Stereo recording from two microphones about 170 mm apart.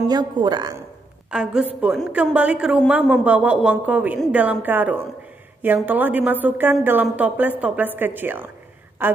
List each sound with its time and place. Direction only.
0.1 s a woman's voice: 25° right (ahead or behind)
1.3 s a woman's voice: 5° right (ahead or behind)